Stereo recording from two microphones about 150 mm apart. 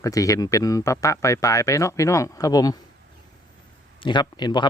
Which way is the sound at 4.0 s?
30° left (ahead or behind).